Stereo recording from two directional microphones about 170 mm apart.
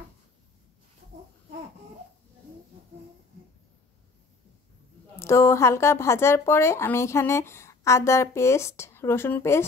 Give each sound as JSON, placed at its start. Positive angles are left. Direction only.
{"t": 5.2, "sound": "speech", "side_deg": 15}